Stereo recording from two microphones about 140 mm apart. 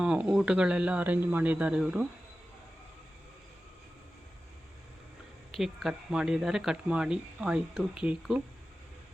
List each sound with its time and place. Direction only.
0.0 s speech: 5° right (ahead or behind)
5.5 s speech: centre (ahead or behind)